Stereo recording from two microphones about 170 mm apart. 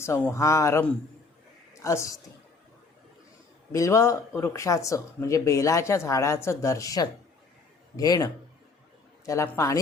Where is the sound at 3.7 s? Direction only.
15° left (ahead or behind).